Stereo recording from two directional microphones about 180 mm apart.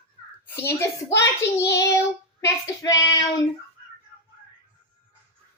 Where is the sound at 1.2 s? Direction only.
15° left (ahead or behind).